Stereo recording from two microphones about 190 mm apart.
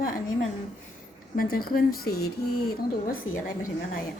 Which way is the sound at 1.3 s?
50° left (ahead or behind).